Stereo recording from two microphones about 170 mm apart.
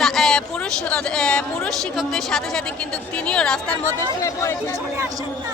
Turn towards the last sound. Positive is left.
turn(degrees=15)  # may be behind; listen again after turning